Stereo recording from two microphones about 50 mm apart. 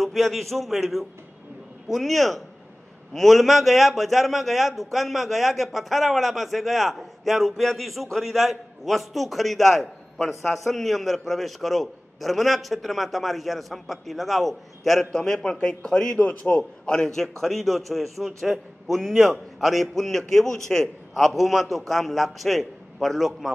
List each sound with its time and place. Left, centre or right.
0.0 s a man's voice: centre